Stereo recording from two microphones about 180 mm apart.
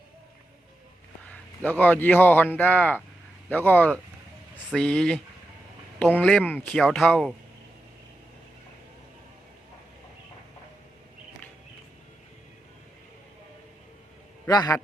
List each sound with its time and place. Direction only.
1.3 s a man's voice: 10° left (ahead or behind)
14.4 s a man's voice: 20° left (ahead or behind)